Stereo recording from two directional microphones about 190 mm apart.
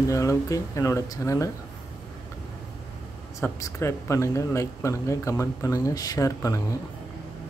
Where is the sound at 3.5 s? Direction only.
15° left (ahead or behind).